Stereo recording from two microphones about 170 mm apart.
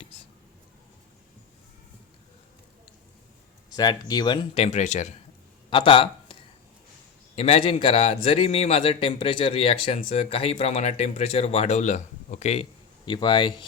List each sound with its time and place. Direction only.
3.7 s a man's voice: 20° left (ahead or behind); by 5.1 s 45° left (ahead or behind)
5.7 s speech: 30° left (ahead or behind)
7.3 s a man's voice: 40° left (ahead or behind)
13.1 s speech: 30° left (ahead or behind)